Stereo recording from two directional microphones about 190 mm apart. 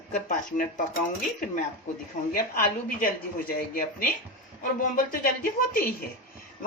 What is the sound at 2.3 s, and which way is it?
Speech, 50° left (ahead or behind).